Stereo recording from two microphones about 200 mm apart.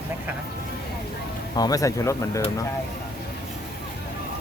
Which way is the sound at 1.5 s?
20° left (ahead or behind).